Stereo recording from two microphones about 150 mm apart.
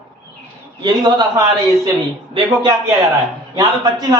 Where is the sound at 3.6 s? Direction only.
25° right (ahead or behind).